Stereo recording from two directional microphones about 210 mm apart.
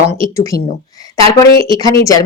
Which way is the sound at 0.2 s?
15° left (ahead or behind).